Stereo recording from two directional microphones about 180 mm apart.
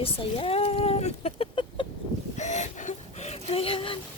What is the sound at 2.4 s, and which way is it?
Whimper, 40° left (ahead or behind).